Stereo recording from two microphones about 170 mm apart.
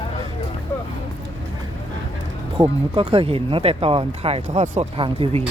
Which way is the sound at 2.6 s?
30° right (ahead or behind).